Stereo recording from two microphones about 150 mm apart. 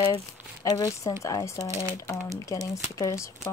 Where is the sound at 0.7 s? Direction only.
25° left (ahead or behind).